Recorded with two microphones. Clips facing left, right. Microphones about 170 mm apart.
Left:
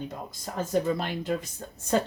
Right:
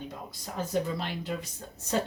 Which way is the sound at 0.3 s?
50° left (ahead or behind).